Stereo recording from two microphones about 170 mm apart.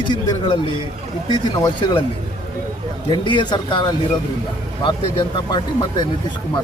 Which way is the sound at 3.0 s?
25° left (ahead or behind).